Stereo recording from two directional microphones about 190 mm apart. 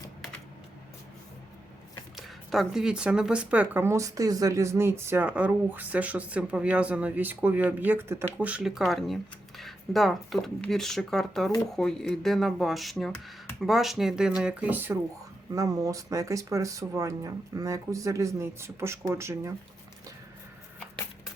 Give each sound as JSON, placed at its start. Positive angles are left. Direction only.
{"t": 2.1, "sound": "speech", "side_deg": 0}